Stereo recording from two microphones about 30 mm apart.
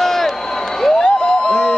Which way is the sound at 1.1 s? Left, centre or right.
Left.